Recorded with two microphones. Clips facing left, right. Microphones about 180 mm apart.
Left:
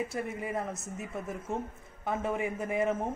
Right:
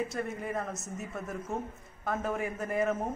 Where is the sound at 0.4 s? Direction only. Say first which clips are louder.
Left 1 dB; 5° left (ahead or behind).